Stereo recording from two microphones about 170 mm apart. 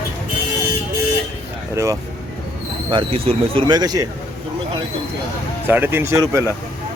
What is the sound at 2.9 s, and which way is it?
Speech, 30° right (ahead or behind).